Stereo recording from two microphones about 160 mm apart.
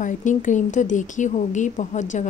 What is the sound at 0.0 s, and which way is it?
A woman's voice, 55° left (ahead or behind).